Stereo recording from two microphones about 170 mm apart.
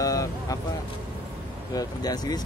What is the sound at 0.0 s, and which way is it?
Vehicle, 20° left (ahead or behind).